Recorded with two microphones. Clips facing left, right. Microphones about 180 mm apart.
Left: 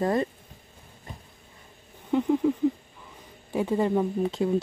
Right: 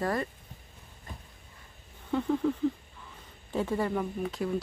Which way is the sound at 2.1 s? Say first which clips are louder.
Left 5 dB; 15° left (ahead or behind).